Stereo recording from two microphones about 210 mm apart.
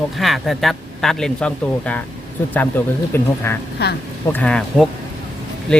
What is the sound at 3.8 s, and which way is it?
Speech, 50° left (ahead or behind).